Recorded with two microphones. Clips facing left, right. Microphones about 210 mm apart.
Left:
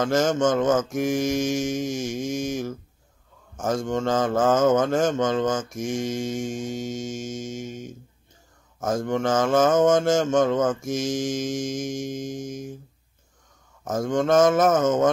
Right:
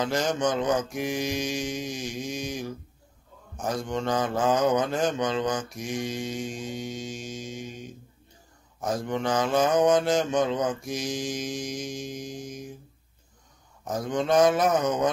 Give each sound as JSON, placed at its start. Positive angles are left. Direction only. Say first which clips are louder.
{"t": 0.0, "sound": "speech", "louder": "left 5 dB", "side_deg": 45}
{"t": 13.8, "sound": "speech", "louder": "left 4 dB", "side_deg": 45}